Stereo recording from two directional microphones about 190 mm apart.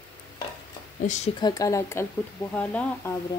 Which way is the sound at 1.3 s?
20° left (ahead or behind).